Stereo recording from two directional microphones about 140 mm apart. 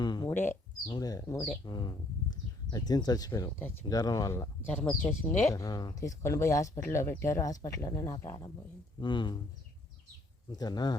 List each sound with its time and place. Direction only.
0.0 s a sound: 30° left (ahead or behind)
0.3 s speech: 15° left (ahead or behind)
4.7 s speech: 10° left (ahead or behind)
5.5 s speech: 25° left (ahead or behind)
9.0 s speech: 35° left (ahead or behind)
10.5 s speech: 30° left (ahead or behind)